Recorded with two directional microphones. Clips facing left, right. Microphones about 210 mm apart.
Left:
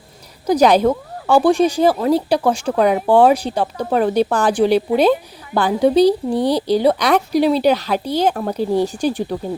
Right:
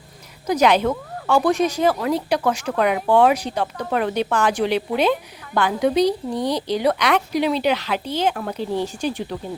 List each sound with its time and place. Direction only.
0.4 s speech: 35° left (ahead or behind)